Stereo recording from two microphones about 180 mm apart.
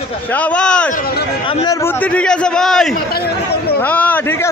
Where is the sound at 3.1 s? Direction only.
60° left (ahead or behind).